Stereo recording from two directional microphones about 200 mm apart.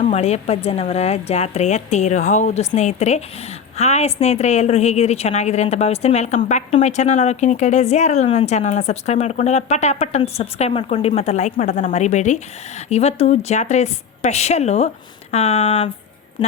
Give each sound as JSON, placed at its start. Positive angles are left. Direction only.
{"t": 0.0, "sound": "a woman's voice", "side_deg": 35}